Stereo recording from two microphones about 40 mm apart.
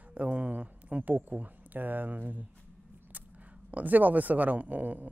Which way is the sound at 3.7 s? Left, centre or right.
Right.